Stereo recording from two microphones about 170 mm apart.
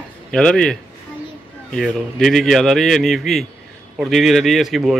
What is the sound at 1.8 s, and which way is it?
A man's voice, centre (ahead or behind).